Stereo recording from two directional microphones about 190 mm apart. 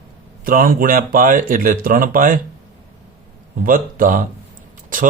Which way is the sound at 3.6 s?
45° right (ahead or behind).